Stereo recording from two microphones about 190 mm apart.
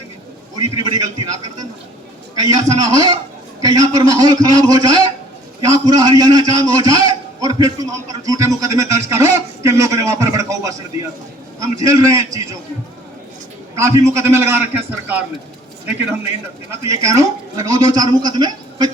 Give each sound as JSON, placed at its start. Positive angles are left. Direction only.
{"t": 0.9, "sound": "a man's voice", "side_deg": -20}
{"t": 2.4, "sound": "a man's voice", "side_deg": -20}
{"t": 13.7, "sound": "a man's voice", "side_deg": -15}
{"t": 16.9, "sound": "a man's voice", "side_deg": -15}